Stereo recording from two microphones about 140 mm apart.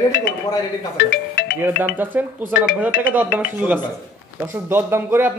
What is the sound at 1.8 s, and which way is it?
A man's voice, 15° right (ahead or behind).